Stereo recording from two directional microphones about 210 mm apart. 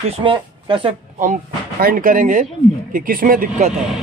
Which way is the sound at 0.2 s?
25° right (ahead or behind).